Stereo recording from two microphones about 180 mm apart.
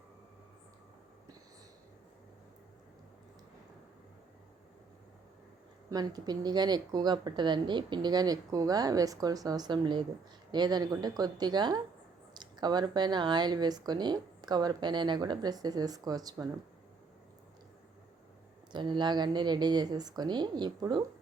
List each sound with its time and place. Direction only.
5.9 s speech: 20° right (ahead or behind)
18.7 s speech: 25° right (ahead or behind)